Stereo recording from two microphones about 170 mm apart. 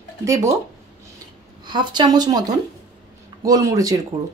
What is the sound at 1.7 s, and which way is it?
Speech, 25° right (ahead or behind).